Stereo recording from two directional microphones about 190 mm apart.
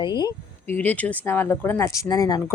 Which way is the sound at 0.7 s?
10° left (ahead or behind).